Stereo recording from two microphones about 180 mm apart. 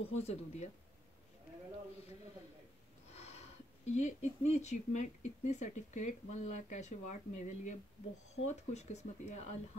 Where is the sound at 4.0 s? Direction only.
40° left (ahead or behind).